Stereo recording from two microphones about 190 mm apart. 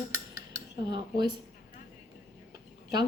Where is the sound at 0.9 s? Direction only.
25° right (ahead or behind).